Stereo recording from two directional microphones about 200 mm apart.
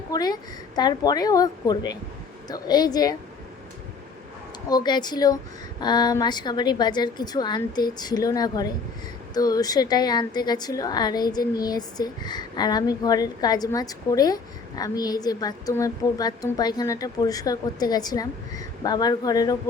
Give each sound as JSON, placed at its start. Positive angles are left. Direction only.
{"t": 0.1, "sound": "a woman's voice", "side_deg": 20}
{"t": 4.7, "sound": "a woman's voice", "side_deg": 20}